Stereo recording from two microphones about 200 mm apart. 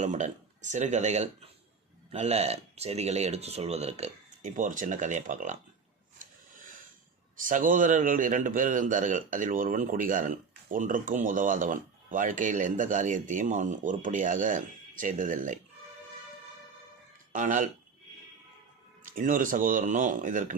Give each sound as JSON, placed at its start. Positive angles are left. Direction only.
{"t": 0.0, "sound": "a man's voice", "side_deg": -35}
{"t": 6.1, "sound": "a sound", "side_deg": -40}
{"t": 7.3, "sound": "a man's voice", "side_deg": -40}
{"t": 17.3, "sound": "a man's voice", "side_deg": -40}
{"t": 19.0, "sound": "a man's voice", "side_deg": -45}